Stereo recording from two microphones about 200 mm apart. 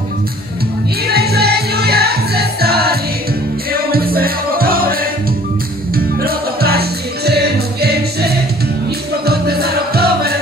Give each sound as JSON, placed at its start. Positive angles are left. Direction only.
{"t": 1.0, "sound": "music", "side_deg": -50}
{"t": 5.9, "sound": "music", "side_deg": -50}